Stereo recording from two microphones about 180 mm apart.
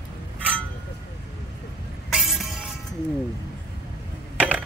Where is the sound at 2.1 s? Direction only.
Centre (ahead or behind).